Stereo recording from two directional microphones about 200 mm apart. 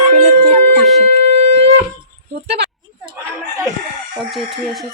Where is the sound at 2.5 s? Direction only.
55° right (ahead or behind).